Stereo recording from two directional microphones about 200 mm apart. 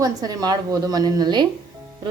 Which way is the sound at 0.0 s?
20° right (ahead or behind).